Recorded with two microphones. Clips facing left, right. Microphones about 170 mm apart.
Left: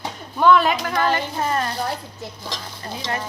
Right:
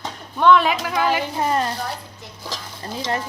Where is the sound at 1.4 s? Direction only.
20° right (ahead or behind).